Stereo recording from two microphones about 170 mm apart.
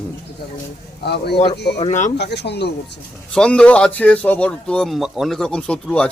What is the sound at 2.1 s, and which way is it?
Speech, 85° left.